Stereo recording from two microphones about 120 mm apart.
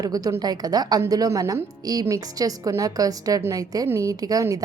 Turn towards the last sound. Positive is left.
turn(degrees=-30)  # may be behind; listen again after turning